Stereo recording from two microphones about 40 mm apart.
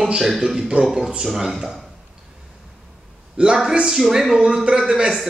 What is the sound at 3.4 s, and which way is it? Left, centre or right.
Speech, centre.